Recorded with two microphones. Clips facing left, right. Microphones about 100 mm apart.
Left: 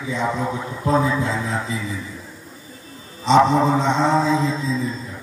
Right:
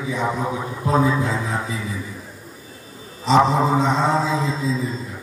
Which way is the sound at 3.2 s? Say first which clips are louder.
Left 1 dB; 5° right (ahead or behind).